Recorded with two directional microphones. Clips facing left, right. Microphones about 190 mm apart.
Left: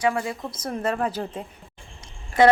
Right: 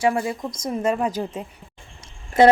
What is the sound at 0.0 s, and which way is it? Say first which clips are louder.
Speech: right 3 dB; 25° right (ahead or behind).